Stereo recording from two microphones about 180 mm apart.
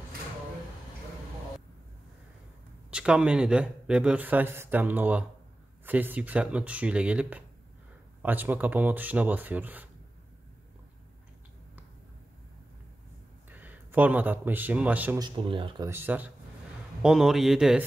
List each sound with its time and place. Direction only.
2.9 s speech: 5° right (ahead or behind)
13.5 s a man's voice: 10° right (ahead or behind)
15.1 s speech: 25° right (ahead or behind)
15.9 s speech: 10° right (ahead or behind)